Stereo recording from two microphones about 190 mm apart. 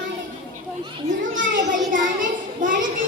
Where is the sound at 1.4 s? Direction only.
45° right (ahead or behind).